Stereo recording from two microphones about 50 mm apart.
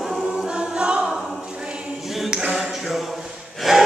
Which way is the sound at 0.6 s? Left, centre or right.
Centre.